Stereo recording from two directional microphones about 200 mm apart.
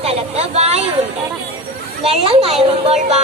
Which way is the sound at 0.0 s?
30° right (ahead or behind).